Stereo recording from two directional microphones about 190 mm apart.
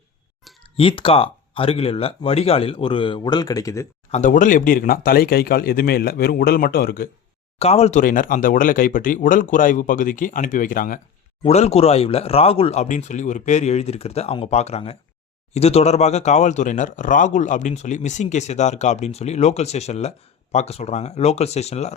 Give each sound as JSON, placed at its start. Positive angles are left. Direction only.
{"t": 0.8, "sound": "speech", "side_deg": 30}
{"t": 4.1, "sound": "speech", "side_deg": 40}
{"t": 7.6, "sound": "speech", "side_deg": 30}
{"t": 11.4, "sound": "speech", "side_deg": 35}